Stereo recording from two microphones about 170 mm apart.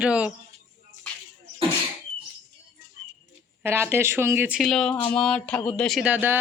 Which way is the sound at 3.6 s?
15° right (ahead or behind).